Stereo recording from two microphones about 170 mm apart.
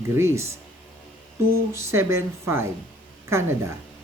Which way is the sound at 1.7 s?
15° right (ahead or behind).